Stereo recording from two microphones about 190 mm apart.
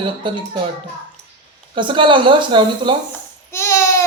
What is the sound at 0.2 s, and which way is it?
Speech, 25° right (ahead or behind).